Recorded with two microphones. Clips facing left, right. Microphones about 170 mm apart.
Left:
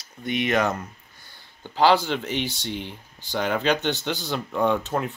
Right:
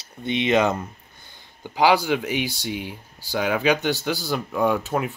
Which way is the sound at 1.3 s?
15° right (ahead or behind).